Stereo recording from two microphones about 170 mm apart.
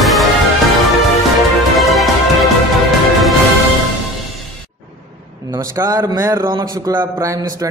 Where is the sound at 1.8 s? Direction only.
Centre (ahead or behind).